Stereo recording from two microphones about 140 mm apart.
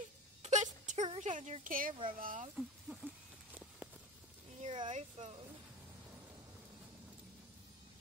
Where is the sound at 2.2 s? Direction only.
80° right.